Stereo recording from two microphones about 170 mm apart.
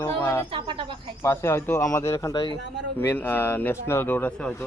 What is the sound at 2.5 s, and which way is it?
Speech, 90° right.